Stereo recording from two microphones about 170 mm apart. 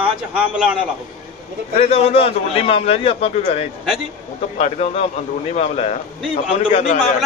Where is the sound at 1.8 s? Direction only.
35° left (ahead or behind).